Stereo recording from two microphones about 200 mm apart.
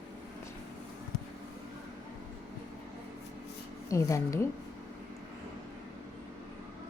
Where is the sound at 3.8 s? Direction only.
15° left (ahead or behind).